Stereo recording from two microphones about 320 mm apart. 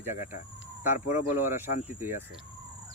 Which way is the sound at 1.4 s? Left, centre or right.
Centre.